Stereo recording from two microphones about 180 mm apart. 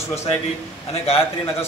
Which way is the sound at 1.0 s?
35° left (ahead or behind).